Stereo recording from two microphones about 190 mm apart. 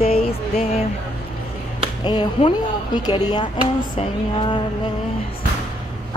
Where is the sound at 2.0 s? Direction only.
25° left (ahead or behind).